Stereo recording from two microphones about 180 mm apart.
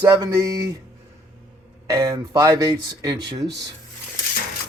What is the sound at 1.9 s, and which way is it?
Speech, 20° right (ahead or behind).